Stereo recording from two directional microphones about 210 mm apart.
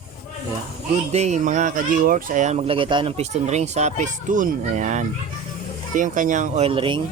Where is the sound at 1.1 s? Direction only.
35° right (ahead or behind).